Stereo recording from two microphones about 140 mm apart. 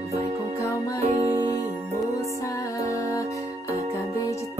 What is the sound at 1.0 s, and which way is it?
Music, 50° right (ahead or behind).